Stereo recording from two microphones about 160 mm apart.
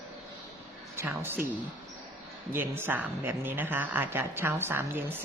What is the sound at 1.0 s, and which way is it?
Speech, 15° right (ahead or behind).